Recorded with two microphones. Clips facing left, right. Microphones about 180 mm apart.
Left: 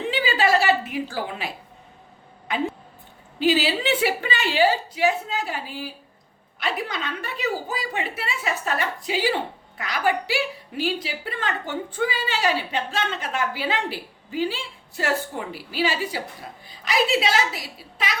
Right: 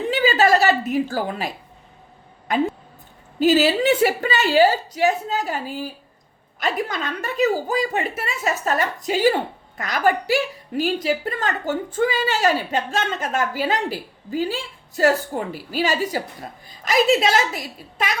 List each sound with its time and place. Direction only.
0.1 s a woman's voice: 45° right (ahead or behind)
2.5 s a woman's voice: 45° right (ahead or behind)